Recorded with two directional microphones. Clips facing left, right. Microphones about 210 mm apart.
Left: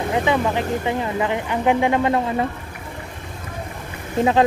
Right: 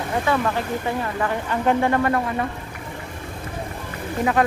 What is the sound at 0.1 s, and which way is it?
Speech, 15° left (ahead or behind).